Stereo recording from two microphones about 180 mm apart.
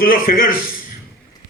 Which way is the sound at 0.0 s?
50° left (ahead or behind).